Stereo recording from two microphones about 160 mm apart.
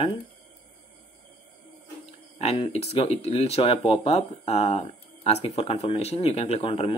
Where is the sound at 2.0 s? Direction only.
45° left (ahead or behind).